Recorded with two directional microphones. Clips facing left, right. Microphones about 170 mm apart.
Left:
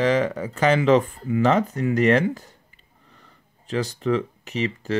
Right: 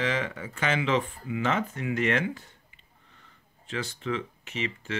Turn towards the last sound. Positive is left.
turn(degrees=40)  # may be behind; listen again after turning